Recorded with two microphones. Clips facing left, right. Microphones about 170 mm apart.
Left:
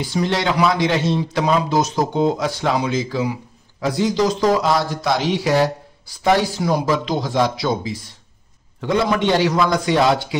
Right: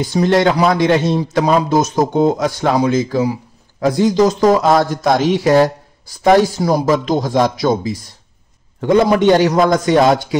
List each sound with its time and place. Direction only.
0.0 s speech: 45° right (ahead or behind)